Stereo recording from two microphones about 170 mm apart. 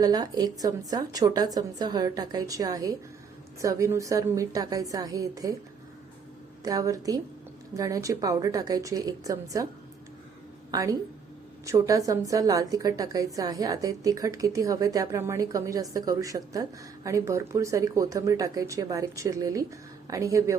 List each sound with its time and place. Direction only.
0.0 s a woman's voice: 25° right (ahead or behind)
6.7 s a woman's voice: 20° right (ahead or behind)
10.7 s a woman's voice: 20° right (ahead or behind)